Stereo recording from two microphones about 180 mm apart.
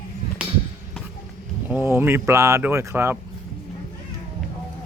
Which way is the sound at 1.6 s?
10° right (ahead or behind).